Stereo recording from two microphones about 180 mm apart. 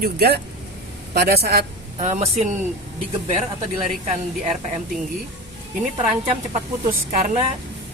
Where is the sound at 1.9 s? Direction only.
40° right (ahead or behind).